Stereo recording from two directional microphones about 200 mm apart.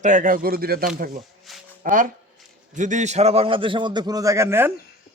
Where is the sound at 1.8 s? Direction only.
40° right (ahead or behind).